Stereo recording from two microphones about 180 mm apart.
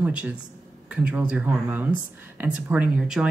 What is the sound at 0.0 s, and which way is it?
Speech, 5° right (ahead or behind).